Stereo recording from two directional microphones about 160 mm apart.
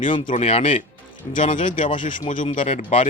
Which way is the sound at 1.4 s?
45° left (ahead or behind).